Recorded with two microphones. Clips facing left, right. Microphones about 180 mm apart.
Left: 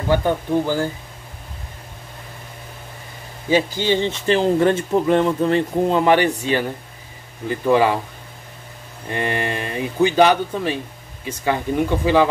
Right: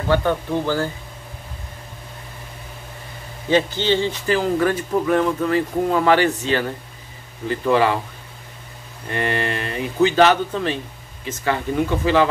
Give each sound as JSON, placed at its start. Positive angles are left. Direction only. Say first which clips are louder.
{"t": 0.1, "sound": "speech", "louder": "left 1 dB", "side_deg": 15}
{"t": 3.4, "sound": "speech", "louder": "even", "side_deg": 10}
{"t": 9.1, "sound": "speech", "louder": "even", "side_deg": 15}